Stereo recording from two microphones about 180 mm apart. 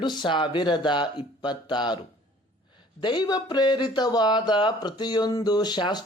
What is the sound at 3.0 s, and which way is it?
Speech, 25° left (ahead or behind).